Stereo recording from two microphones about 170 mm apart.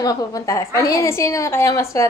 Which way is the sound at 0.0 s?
20° left (ahead or behind).